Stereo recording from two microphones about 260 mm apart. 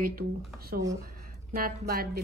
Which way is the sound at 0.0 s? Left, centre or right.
Right.